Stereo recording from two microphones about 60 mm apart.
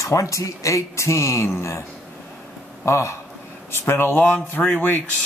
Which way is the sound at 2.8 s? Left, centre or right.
Left.